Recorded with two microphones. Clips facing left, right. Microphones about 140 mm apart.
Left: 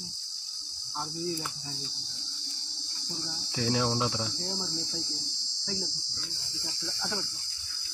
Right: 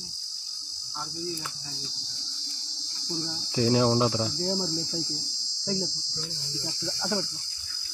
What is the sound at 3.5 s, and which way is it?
Cricket, 35° right (ahead or behind).